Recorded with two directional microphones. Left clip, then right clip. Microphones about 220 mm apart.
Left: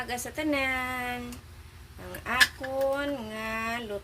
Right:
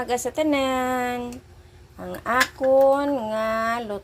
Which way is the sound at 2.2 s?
25° right (ahead or behind).